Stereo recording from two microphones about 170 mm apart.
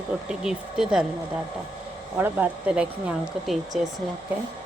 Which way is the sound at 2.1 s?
10° right (ahead or behind).